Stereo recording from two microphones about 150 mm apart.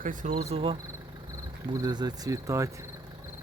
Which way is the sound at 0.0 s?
60° right (ahead or behind).